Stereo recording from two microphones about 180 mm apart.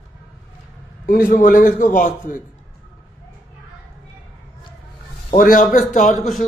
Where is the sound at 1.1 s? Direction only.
50° left (ahead or behind).